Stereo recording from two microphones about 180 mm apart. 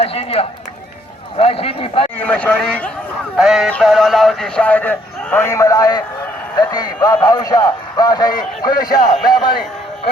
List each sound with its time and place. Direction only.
0.0 s a man's voice: 35° left (ahead or behind)
2.1 s a man's voice: 5° left (ahead or behind); by 9.6 s 25° left (ahead or behind)